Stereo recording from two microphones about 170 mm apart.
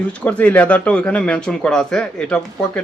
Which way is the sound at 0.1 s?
10° left (ahead or behind).